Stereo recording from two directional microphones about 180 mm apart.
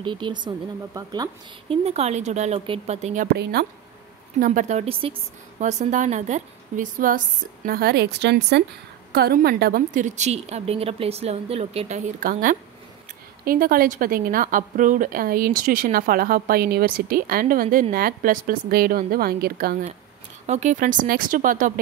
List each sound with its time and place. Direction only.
0.0 s speech: 25° right (ahead or behind)
1.7 s a woman's voice: 35° right (ahead or behind)
4.4 s a woman's voice: 45° right (ahead or behind)
12.2 s a woman's voice: 50° right (ahead or behind)
20.4 s a woman's voice: 40° right (ahead or behind)